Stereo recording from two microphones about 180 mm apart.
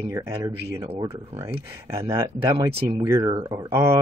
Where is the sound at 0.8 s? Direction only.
30° right (ahead or behind).